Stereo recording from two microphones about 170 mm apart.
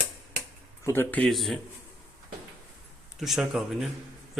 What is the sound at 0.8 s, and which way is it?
Speech, 15° left (ahead or behind).